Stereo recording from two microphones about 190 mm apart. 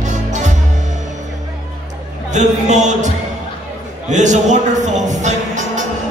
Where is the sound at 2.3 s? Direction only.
40° right (ahead or behind).